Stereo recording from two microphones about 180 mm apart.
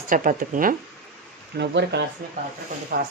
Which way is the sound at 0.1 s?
50° right (ahead or behind).